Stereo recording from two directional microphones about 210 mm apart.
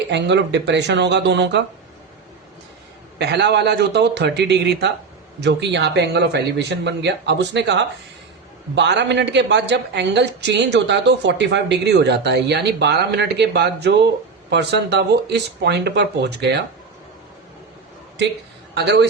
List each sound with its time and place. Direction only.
0.1 s a woman's voice: 55° right (ahead or behind)
3.2 s a woman's voice: 55° right (ahead or behind)
18.7 s speech: 55° right (ahead or behind)